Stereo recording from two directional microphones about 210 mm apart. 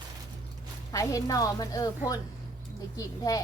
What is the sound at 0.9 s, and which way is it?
A woman's voice, 15° left (ahead or behind).